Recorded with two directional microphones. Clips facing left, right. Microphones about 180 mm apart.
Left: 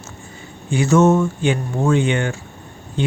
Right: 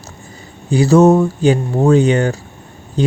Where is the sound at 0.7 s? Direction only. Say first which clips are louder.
Right 5 dB; 35° right (ahead or behind).